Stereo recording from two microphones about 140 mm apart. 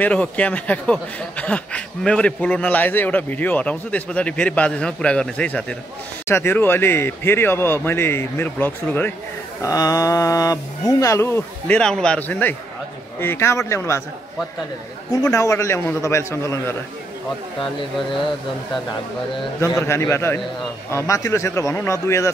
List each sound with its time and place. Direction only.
0.0 s a man's voice: 10° left (ahead or behind)
9.6 s a man's voice: 25° left (ahead or behind)
15.3 s speech: 20° left (ahead or behind)
19.6 s speech: 20° left (ahead or behind)